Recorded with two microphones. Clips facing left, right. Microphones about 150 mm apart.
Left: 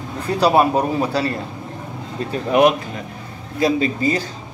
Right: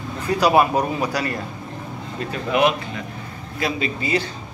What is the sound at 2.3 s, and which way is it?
Speech, 45° left (ahead or behind).